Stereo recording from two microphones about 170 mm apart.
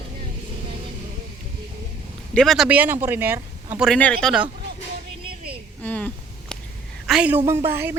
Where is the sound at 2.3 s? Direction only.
Centre (ahead or behind).